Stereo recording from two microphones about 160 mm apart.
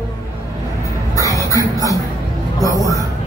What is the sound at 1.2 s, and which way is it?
Music, 20° left (ahead or behind).